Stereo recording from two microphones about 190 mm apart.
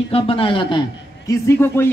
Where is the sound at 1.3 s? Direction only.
15° left (ahead or behind).